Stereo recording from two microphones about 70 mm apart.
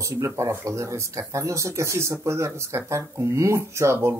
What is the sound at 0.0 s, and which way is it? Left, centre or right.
Speech, right.